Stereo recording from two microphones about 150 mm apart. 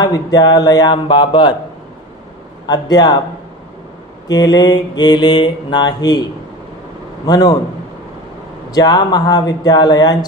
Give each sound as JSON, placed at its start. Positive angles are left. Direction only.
{"t": 0.0, "sound": "mantra", "side_deg": 25}
{"t": 2.6, "sound": "mantra", "side_deg": 30}
{"t": 4.3, "sound": "mantra", "side_deg": 25}
{"t": 7.2, "sound": "mantra", "side_deg": 25}
{"t": 8.7, "sound": "mantra", "side_deg": 25}